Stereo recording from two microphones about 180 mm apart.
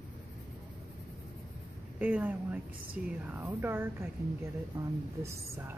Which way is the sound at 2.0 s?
10° right (ahead or behind).